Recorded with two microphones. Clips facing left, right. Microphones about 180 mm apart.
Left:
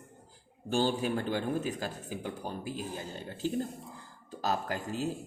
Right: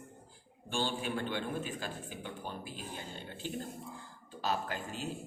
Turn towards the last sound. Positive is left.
turn(degrees=40)  # may be behind; listen again after turning